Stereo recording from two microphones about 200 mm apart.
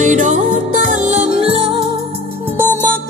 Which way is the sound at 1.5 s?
25° right (ahead or behind).